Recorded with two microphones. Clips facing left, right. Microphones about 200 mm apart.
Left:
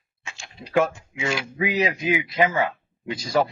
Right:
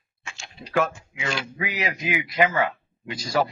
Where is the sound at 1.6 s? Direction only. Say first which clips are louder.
Left 7 dB; 25° left (ahead or behind).